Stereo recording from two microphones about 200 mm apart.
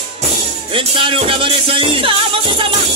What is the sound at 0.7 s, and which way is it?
Music, 25° right (ahead or behind).